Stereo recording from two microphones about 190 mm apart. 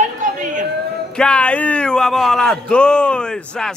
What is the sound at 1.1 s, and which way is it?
Speech, 5° left (ahead or behind).